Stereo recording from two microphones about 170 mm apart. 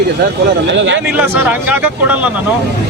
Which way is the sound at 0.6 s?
90° right.